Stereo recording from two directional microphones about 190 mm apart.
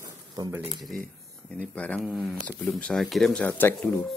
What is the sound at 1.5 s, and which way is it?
Speech, 5° left (ahead or behind).